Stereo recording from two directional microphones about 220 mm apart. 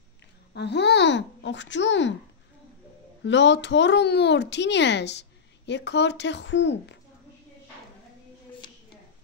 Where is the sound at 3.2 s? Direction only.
55° left (ahead or behind).